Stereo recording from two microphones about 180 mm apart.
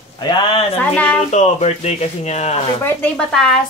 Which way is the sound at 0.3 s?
30° left (ahead or behind).